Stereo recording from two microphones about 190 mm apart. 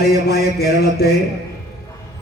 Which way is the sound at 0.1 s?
55° left (ahead or behind).